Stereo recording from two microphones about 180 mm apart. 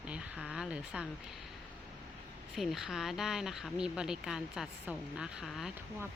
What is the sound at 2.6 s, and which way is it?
Speech, centre (ahead or behind).